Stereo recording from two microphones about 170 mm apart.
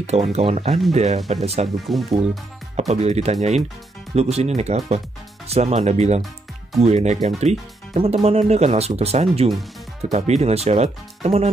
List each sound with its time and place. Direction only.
0.0 s speech: 40° right (ahead or behind)
1.9 s speech: centre (ahead or behind)
2.7 s speech: 40° right (ahead or behind)
9.5 s speech: centre (ahead or behind)
10.1 s speech: 40° right (ahead or behind)